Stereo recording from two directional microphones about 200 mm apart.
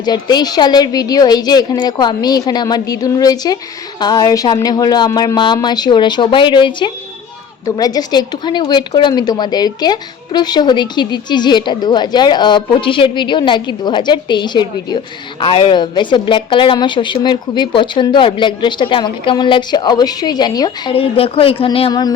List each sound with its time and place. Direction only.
0.0 s a woman's voice: 20° left (ahead or behind)